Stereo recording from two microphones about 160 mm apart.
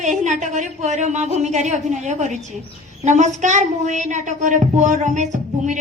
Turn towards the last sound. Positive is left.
turn(degrees=-50)  # may be behind; listen again after turning